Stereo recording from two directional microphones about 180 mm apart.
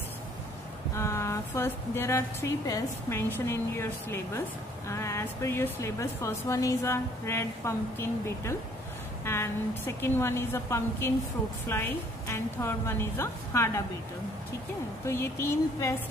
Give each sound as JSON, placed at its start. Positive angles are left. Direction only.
{"t": 0.9, "sound": "speech", "side_deg": 15}
{"t": 15.0, "sound": "speech", "side_deg": 15}